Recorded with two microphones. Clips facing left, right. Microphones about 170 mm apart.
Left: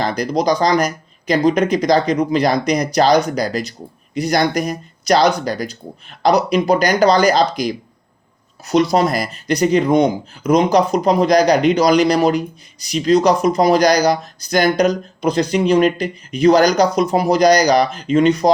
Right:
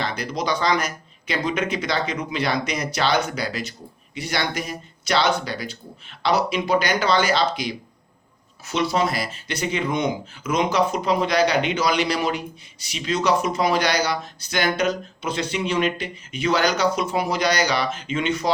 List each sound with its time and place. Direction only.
0.0 s speech: 40° left (ahead or behind)